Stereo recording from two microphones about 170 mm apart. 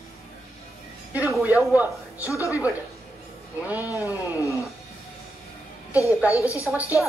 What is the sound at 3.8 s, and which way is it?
Music, 20° left (ahead or behind).